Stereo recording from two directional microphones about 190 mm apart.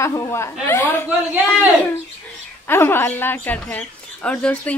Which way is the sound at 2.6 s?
10° left (ahead or behind).